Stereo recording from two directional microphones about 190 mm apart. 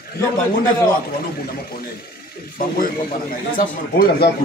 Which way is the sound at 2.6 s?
45° left (ahead or behind).